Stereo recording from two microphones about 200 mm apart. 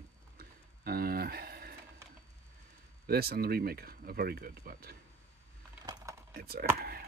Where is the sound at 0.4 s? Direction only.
50° right (ahead or behind).